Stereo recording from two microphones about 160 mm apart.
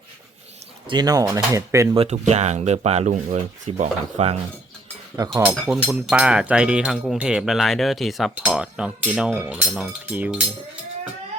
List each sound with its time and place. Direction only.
0.9 s speech: 25° right (ahead or behind)
2.0 s speech: 45° right (ahead or behind)
5.5 s speech: 10° right (ahead or behind)